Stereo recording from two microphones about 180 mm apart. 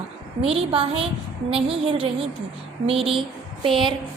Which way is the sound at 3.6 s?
30° right (ahead or behind).